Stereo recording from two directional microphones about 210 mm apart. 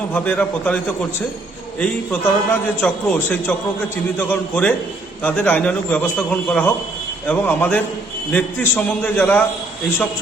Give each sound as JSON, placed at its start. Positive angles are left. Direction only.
{"t": 0.1, "sound": "a man's voice", "side_deg": 5}